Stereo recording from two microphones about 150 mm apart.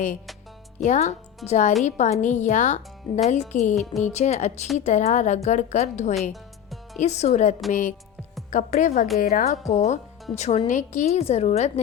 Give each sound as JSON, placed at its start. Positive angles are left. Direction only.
{"t": 0.9, "sound": "a woman's voice", "side_deg": 50}
{"t": 3.1, "sound": "speech", "side_deg": 30}
{"t": 3.5, "sound": "a woman's voice", "side_deg": 50}